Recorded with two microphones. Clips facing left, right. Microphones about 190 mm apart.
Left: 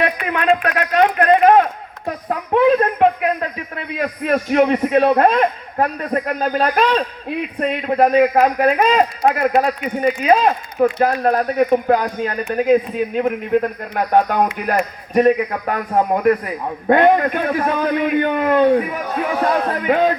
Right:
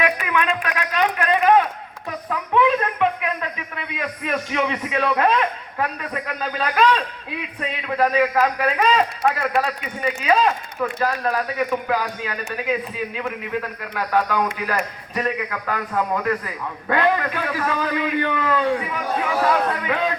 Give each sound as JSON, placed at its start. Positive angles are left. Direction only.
{"t": 0.0, "sound": "a sound", "side_deg": 40}
{"t": 7.6, "sound": "a man's voice", "side_deg": 45}
{"t": 15.6, "sound": "a man's voice", "side_deg": 30}
{"t": 16.3, "sound": "a man's voice", "side_deg": 45}